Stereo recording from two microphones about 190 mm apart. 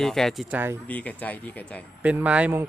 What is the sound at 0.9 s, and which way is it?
Speech, 10° left (ahead or behind).